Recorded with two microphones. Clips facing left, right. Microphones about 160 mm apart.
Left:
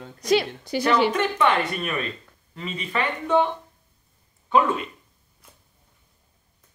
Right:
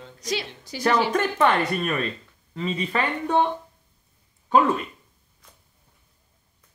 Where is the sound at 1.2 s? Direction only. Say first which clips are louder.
Right 1 dB; 45° right (ahead or behind).